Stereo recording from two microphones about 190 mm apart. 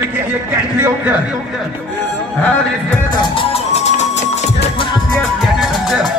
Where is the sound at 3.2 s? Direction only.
30° left (ahead or behind).